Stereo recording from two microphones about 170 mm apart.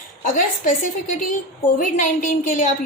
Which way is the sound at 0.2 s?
50° left (ahead or behind).